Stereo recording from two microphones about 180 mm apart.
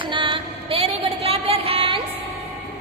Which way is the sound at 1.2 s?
35° right (ahead or behind).